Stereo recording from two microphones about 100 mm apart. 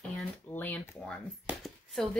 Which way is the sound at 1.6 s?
Centre (ahead or behind).